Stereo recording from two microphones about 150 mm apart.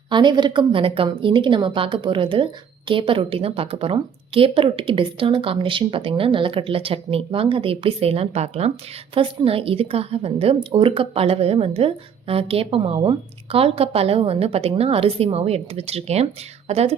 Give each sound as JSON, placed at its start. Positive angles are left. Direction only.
{"t": 0.1, "sound": "a woman's voice", "side_deg": -30}